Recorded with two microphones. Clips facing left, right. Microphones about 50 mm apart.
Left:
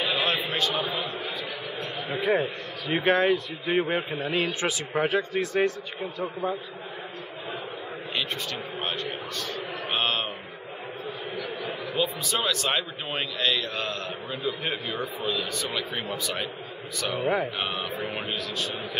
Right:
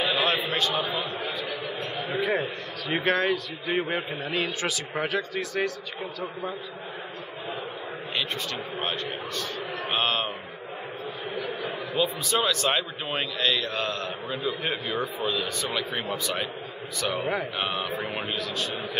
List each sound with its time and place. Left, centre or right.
0.0 s a sound: centre
0.6 s a man's voice: centre
4.5 s speech: left
8.7 s a man's voice: centre
9.8 s mantra: centre
11.9 s a man's voice: centre